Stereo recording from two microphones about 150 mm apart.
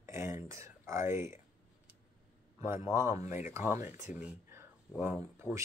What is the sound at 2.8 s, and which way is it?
Speech, 20° right (ahead or behind).